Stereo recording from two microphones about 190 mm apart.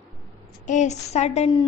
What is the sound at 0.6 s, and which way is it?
A woman's voice, 40° left (ahead or behind).